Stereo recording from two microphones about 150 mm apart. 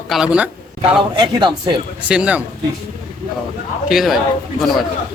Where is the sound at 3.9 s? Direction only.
Centre (ahead or behind).